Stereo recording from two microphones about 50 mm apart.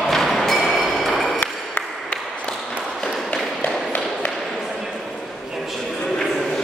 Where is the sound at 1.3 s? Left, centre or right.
Left.